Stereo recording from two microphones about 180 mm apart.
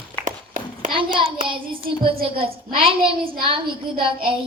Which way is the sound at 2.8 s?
30° right (ahead or behind).